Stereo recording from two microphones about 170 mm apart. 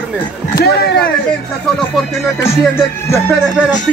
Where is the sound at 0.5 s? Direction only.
70° left (ahead or behind).